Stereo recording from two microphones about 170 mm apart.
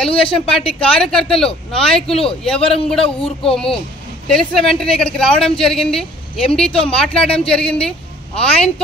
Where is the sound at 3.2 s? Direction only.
35° left (ahead or behind).